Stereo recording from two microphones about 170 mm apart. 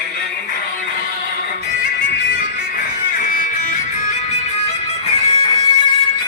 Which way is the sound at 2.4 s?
55° left (ahead or behind).